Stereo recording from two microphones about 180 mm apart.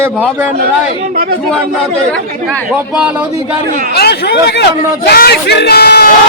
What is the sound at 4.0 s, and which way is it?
A man's voice, 70° left (ahead or behind).